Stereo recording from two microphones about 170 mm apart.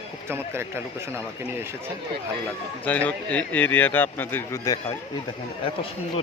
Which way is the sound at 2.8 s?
10° left (ahead or behind).